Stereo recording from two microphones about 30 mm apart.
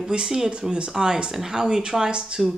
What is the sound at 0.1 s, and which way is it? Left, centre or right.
Speech, right.